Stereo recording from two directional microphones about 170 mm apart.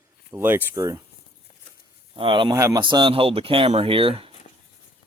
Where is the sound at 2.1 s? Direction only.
30° right (ahead or behind).